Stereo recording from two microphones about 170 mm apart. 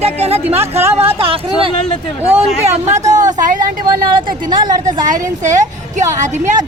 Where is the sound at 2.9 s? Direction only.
40° right (ahead or behind).